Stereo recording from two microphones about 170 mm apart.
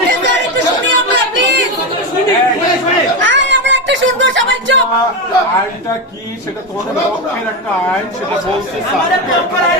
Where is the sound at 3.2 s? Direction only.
90° right.